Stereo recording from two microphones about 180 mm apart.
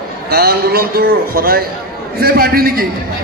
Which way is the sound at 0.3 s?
60° right (ahead or behind).